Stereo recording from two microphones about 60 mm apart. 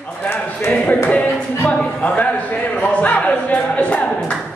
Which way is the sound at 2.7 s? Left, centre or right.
Left.